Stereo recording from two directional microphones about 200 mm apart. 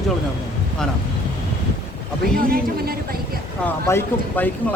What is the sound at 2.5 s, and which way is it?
Speech, 50° right (ahead or behind).